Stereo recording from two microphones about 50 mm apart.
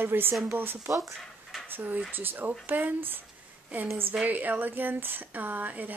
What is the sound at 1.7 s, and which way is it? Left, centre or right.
Speech, right.